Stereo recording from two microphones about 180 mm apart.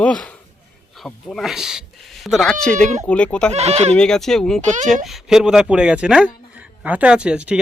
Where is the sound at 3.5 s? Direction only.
35° right (ahead or behind).